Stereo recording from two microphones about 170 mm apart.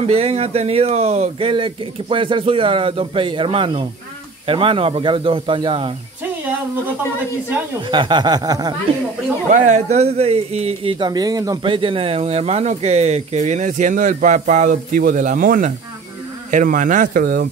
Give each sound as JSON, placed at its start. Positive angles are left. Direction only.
{"t": 0.0, "sound": "a man's voice", "side_deg": -35}
{"t": 7.9, "sound": "a sound", "side_deg": -25}
{"t": 9.5, "sound": "a man's voice", "side_deg": -45}